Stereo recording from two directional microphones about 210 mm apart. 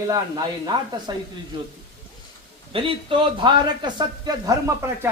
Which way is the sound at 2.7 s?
25° right (ahead or behind).